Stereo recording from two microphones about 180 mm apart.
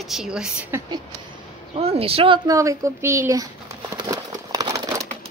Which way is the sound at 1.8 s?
35° right (ahead or behind).